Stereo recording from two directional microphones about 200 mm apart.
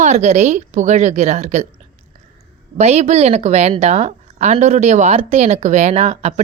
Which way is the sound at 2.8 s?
35° right (ahead or behind).